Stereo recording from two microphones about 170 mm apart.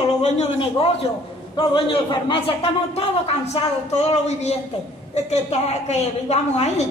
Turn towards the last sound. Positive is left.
turn(degrees=40)  # may be behind; listen again after turning